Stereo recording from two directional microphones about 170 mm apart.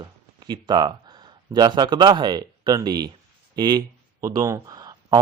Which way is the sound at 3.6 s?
25° right (ahead or behind).